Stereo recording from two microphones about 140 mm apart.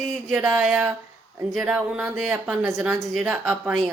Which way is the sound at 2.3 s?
15° right (ahead or behind).